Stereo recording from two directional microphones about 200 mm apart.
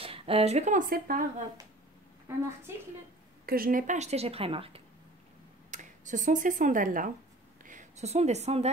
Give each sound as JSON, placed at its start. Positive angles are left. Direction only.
{"t": 0.0, "sound": "speech", "side_deg": -30}
{"t": 2.7, "sound": "a woman's voice", "side_deg": -10}
{"t": 3.4, "sound": "a woman's voice", "side_deg": -45}
{"t": 5.7, "sound": "a woman's voice", "side_deg": -40}